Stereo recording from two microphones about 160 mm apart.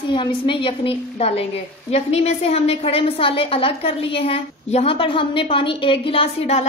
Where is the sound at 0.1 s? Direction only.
30° left (ahead or behind).